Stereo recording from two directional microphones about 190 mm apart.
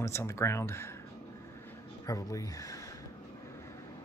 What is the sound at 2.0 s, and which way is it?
Speech, 15° left (ahead or behind).